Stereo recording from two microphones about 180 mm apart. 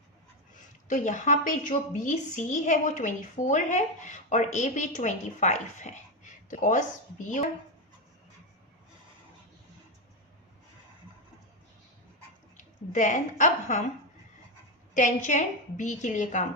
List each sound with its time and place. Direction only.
0.9 s a woman's voice: 45° left (ahead or behind)
12.5 s a woman's voice: 45° left (ahead or behind)
14.9 s a woman's voice: 45° left (ahead or behind)